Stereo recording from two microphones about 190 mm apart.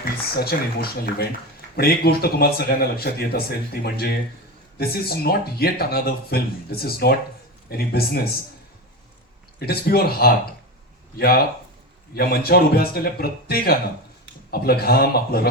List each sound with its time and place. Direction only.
0.0 s speech: 55° left (ahead or behind)
9.6 s speech: 55° left (ahead or behind)
12.1 s speech: 55° left (ahead or behind)